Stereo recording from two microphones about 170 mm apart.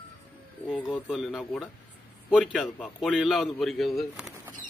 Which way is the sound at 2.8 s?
5° left (ahead or behind).